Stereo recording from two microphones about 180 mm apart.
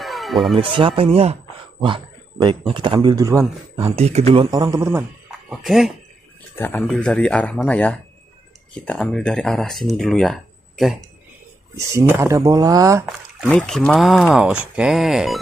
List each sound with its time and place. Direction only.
0.0 s music: centre (ahead or behind)
0.6 s a man's voice: 30° right (ahead or behind)
3.9 s speech: 35° right (ahead or behind); by 4.8 s 20° right (ahead or behind)
5.5 s speech: centre (ahead or behind)
6.5 s speech: 10° left (ahead or behind)
11.7 s speech: 15° right (ahead or behind)
13.5 s speech: 5° left (ahead or behind)